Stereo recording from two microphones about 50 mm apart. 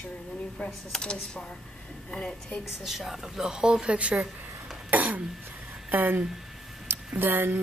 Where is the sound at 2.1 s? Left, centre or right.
Centre.